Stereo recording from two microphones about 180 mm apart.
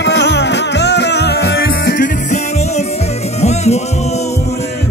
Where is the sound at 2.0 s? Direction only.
40° left (ahead or behind).